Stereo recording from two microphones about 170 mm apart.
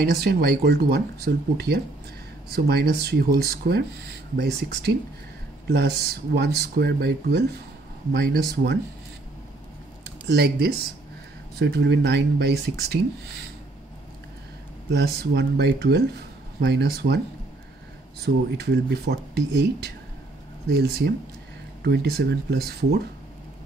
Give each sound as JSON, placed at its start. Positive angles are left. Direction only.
{"t": 0.0, "sound": "speech", "side_deg": -70}
{"t": 10.3, "sound": "speech", "side_deg": -70}
{"t": 11.5, "sound": "speech", "side_deg": -85}
{"t": 14.9, "sound": "speech", "side_deg": -80}
{"t": 18.2, "sound": "speech", "side_deg": -75}
{"t": 20.7, "sound": "speech", "side_deg": -70}